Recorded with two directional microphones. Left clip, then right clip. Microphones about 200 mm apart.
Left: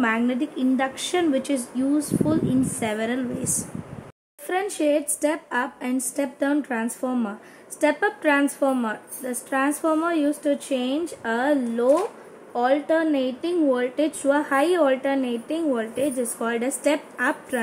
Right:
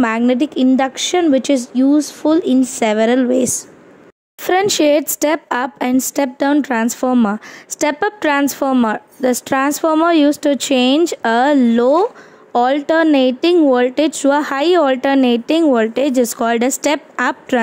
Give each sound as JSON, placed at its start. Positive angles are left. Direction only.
{"t": 0.0, "sound": "speech", "side_deg": -50}